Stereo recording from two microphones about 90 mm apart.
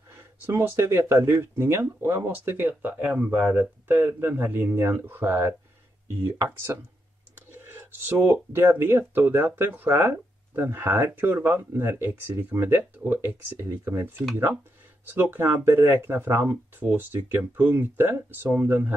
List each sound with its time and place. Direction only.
0.5 s speech: 30° right (ahead or behind)
7.8 s speech: 25° right (ahead or behind)